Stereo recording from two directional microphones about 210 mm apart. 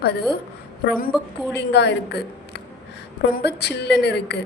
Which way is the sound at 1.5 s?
55° left (ahead or behind).